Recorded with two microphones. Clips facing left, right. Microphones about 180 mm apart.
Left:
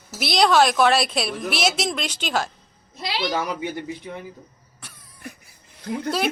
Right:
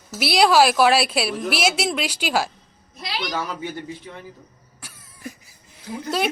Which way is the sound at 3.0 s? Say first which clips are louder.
Left 3 dB; 30° left (ahead or behind).